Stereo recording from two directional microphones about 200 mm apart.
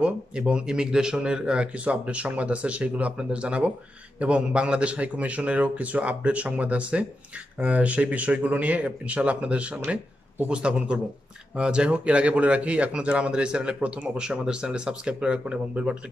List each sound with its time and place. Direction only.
0.0 s speech: 5° right (ahead or behind)